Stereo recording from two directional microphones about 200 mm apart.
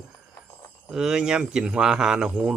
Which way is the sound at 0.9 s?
5° right (ahead or behind).